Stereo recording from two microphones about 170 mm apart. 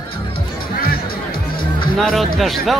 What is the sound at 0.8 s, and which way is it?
Music, 60° left (ahead or behind).